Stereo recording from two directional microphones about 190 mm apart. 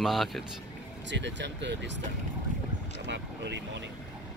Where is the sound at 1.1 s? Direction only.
70° right (ahead or behind).